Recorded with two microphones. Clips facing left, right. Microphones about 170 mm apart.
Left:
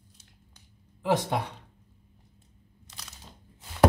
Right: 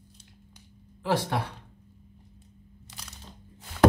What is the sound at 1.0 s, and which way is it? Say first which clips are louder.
Speech: left 1 dB; 20° left (ahead or behind).